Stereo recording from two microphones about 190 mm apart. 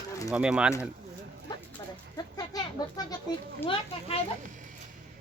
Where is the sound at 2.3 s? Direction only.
20° left (ahead or behind).